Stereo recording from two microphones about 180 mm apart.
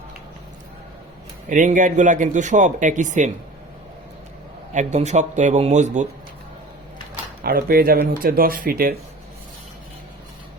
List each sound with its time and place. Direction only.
1.5 s speech: 45° right (ahead or behind)
4.7 s a man's voice: 40° right (ahead or behind)
7.4 s speech: 55° right (ahead or behind)